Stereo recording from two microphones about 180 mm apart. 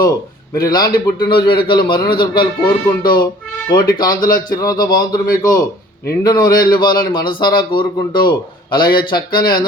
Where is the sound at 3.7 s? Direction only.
20° left (ahead or behind).